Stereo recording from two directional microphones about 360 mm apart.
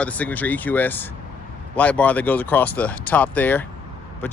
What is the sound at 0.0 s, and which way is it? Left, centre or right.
Speech, centre.